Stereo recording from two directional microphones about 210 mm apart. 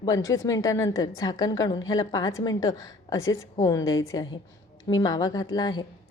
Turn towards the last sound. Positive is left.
turn(degrees=20)  # may be behind; listen again after turning